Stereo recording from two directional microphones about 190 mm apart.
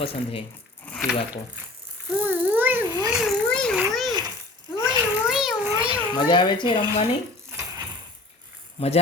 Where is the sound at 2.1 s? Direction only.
10° right (ahead or behind).